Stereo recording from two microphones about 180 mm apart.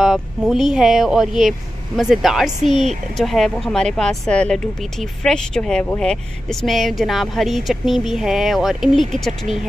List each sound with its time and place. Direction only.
0.0 s speech: centre (ahead or behind)
2.7 s a woman's voice: 40° right (ahead or behind)
3.2 s speech: centre (ahead or behind)